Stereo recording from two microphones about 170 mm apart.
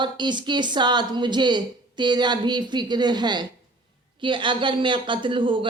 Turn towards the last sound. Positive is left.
turn(degrees=-30)  # may be behind; listen again after turning